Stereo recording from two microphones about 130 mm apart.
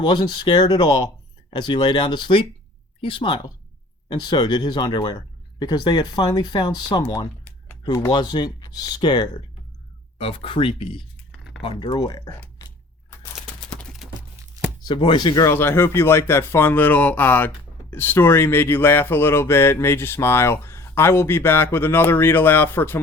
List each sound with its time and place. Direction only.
0.0 s speech: 35° left (ahead or behind)
10.2 s speech: 45° left (ahead or behind)
14.0 s a sound: centre (ahead or behind)
14.4 s chopping: 20° right (ahead or behind)
14.8 s speech: 35° left (ahead or behind)
15.4 s speech: 20° left (ahead or behind)